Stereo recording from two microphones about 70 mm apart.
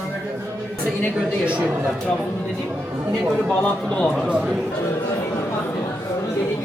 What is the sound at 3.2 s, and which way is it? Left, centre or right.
Speech, right.